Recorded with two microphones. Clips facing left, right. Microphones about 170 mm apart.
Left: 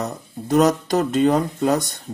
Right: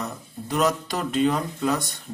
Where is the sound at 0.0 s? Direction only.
40° left (ahead or behind).